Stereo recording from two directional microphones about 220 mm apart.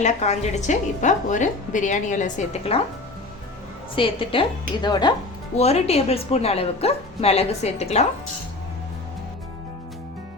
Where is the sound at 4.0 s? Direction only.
25° left (ahead or behind).